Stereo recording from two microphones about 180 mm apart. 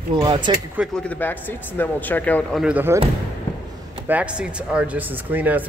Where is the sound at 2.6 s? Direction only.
10° right (ahead or behind).